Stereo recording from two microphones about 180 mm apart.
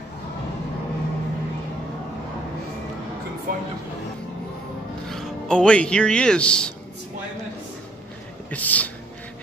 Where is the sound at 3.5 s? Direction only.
55° right (ahead or behind).